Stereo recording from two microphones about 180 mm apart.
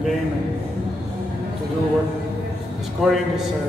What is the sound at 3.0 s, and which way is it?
Speech, centre (ahead or behind).